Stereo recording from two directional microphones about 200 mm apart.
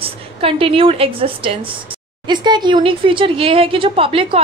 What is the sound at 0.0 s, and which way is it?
A woman's voice, 30° right (ahead or behind).